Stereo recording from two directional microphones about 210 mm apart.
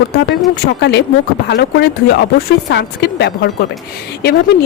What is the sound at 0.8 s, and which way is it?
Speech, 55° left (ahead or behind).